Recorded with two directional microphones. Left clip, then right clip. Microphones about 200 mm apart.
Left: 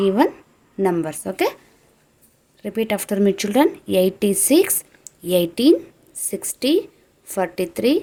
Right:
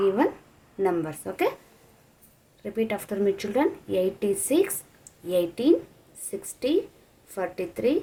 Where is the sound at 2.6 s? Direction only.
50° left (ahead or behind).